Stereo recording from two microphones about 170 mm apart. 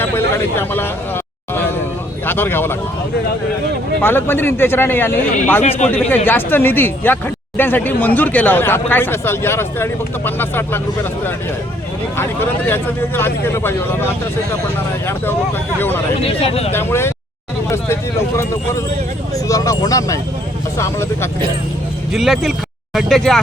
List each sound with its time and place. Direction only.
0.0 s speech: 10° left (ahead or behind)
2.2 s speech: 10° left (ahead or behind)
4.0 s speech: 10° left (ahead or behind)
12.1 s speech: 15° left (ahead or behind)
16.2 s speech: 35° left (ahead or behind)
16.7 s speech: 15° left (ahead or behind)
19.3 s speech: 20° left (ahead or behind)
22.1 s speech: centre (ahead or behind)